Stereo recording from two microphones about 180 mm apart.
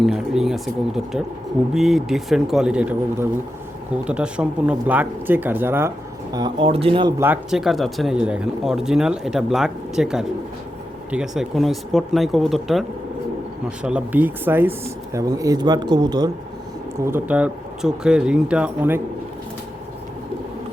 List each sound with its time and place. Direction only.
0.0 s speech: centre (ahead or behind)
6.3 s speech: 25° right (ahead or behind)
7.2 s speech: 5° right (ahead or behind)